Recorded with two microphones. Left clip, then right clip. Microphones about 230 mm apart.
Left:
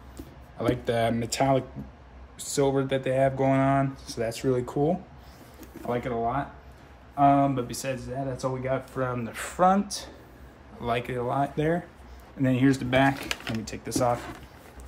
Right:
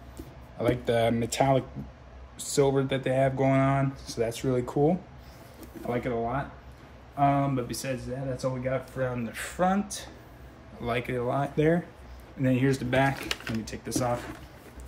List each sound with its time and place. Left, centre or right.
0.6 s speech: centre
10.8 s speech: centre
12.4 s speech: centre